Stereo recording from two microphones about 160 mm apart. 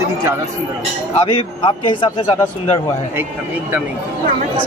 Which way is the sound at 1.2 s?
30° left (ahead or behind).